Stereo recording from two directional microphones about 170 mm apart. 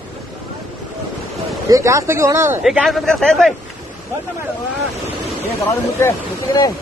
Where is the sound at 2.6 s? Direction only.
Centre (ahead or behind).